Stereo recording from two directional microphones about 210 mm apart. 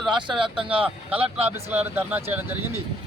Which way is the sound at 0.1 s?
20° right (ahead or behind).